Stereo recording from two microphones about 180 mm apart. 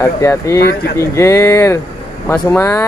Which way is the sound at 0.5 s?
65° left (ahead or behind).